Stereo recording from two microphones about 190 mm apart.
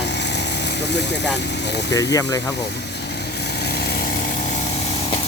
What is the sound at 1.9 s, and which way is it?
Speech, 20° left (ahead or behind).